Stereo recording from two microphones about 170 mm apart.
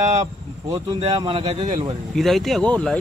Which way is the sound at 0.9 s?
30° right (ahead or behind).